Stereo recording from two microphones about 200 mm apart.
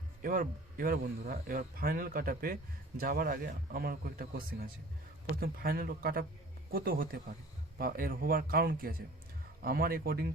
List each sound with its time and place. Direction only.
0.2 s a man's voice: 45° right (ahead or behind)